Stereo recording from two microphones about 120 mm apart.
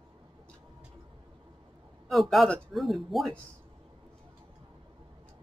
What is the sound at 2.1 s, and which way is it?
Speech, centre (ahead or behind).